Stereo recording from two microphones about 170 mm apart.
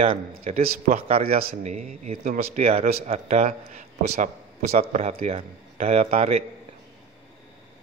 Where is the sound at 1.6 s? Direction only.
40° right (ahead or behind).